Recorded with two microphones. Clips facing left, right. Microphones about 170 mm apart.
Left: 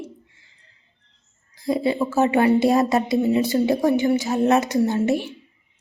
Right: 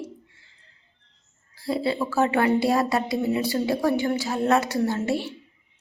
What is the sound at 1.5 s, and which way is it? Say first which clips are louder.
Speech: left 4 dB; 15° left (ahead or behind).